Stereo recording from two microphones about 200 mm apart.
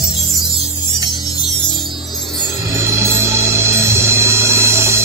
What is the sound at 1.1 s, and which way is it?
Music, 20° left (ahead or behind).